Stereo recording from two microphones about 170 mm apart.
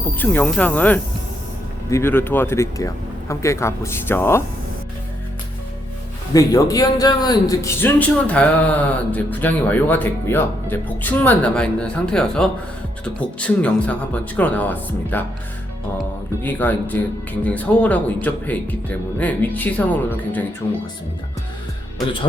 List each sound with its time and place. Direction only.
0.2 s a man's voice: 10° left (ahead or behind)
6.3 s a man's voice: 20° left (ahead or behind)
16.4 s a man's voice: 10° left (ahead or behind)